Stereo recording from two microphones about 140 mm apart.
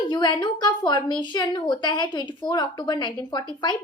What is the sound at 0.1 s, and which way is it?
A woman's voice, 30° left (ahead or behind).